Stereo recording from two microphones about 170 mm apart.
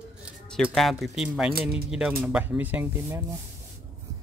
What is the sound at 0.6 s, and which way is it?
Speech, centre (ahead or behind).